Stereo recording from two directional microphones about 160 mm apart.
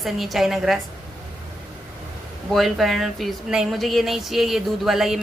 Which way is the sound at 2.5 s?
Centre (ahead or behind).